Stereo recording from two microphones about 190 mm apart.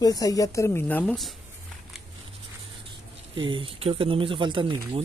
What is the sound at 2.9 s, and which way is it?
Speech, 25° right (ahead or behind).